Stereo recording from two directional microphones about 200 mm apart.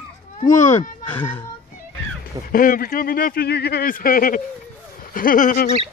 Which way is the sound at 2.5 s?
45° left (ahead or behind).